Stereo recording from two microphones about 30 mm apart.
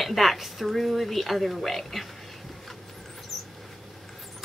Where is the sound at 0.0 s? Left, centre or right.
Centre.